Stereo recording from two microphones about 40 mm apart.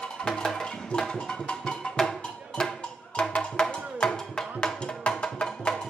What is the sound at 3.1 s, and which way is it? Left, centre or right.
Music, left.